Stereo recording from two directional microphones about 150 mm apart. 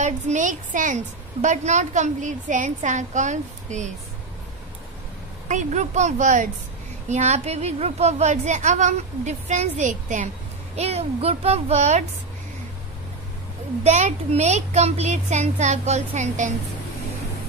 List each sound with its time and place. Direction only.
0.0 s a woman's voice: 55° right (ahead or behind)
5.5 s a woman's voice: 55° right (ahead or behind)
10.8 s a woman's voice: 45° right (ahead or behind)
13.8 s a woman's voice: 50° right (ahead or behind)